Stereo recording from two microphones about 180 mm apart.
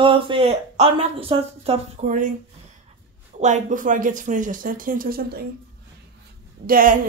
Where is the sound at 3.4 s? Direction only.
40° right (ahead or behind).